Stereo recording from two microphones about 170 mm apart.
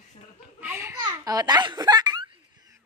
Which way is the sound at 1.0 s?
20° right (ahead or behind).